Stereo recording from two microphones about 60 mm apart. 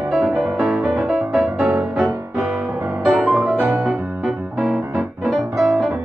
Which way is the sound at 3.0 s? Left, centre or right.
Centre.